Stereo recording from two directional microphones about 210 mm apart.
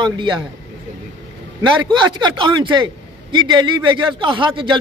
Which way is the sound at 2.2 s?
20° right (ahead or behind).